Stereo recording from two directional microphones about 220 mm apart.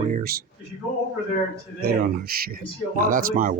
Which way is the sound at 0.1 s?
40° right (ahead or behind).